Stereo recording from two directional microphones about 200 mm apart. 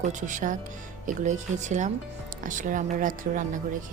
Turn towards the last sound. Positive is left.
turn(degrees=-40)  # may be behind; listen again after turning